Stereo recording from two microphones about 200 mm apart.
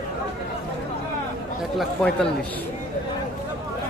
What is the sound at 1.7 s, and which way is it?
Speech, centre (ahead or behind).